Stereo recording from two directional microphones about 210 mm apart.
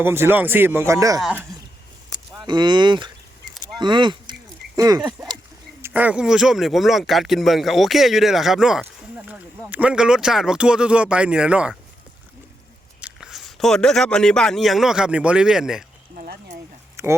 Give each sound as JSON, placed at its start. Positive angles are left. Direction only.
{"t": 0.0, "sound": "speech", "side_deg": -10}
{"t": 2.0, "sound": "speech", "side_deg": -20}
{"t": 13.0, "sound": "speech", "side_deg": -5}
{"t": 16.1, "sound": "speech", "side_deg": -45}
{"t": 17.0, "sound": "speech", "side_deg": -15}